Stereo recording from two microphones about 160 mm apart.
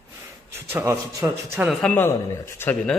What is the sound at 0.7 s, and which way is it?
A man's voice, 15° right (ahead or behind).